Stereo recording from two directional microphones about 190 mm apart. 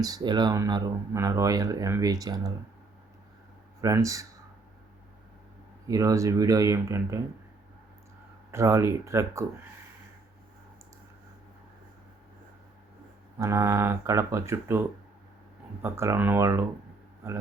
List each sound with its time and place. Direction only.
0.0 s speech: 20° right (ahead or behind)
3.8 s speech: 15° right (ahead or behind)
5.9 s speech: 15° right (ahead or behind)
8.4 s speech: 15° right (ahead or behind)
13.4 s speech: 15° right (ahead or behind)